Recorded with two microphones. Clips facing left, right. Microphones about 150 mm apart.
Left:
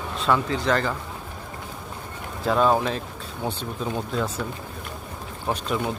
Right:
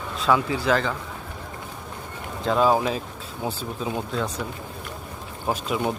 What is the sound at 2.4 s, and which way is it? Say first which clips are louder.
Speech: even; centre (ahead or behind).